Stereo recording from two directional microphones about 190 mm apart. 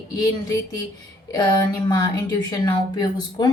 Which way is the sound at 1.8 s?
20° left (ahead or behind).